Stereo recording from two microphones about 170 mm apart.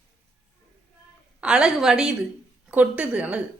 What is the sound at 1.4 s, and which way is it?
A woman's voice, 5° right (ahead or behind).